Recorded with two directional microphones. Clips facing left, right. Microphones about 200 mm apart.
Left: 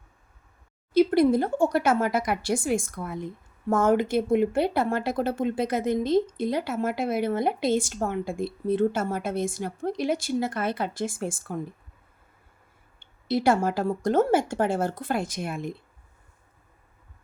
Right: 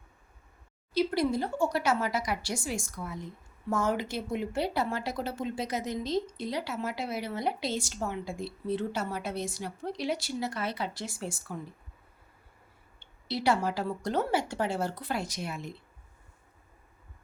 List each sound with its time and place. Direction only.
0.9 s speech: 55° left (ahead or behind)
13.0 s speech: 50° left (ahead or behind)